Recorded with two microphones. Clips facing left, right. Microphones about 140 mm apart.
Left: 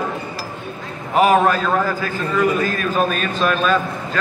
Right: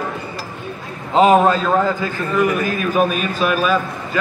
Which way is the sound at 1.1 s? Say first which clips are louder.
Right 2 dB; 20° right (ahead or behind).